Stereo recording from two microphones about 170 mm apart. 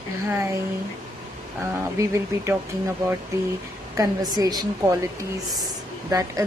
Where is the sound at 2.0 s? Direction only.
15° right (ahead or behind).